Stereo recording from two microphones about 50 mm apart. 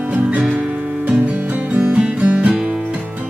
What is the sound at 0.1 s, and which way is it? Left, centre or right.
Music, right.